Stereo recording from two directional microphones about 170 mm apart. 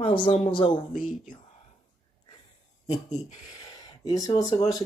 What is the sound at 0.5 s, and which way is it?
Speech, 30° left (ahead or behind).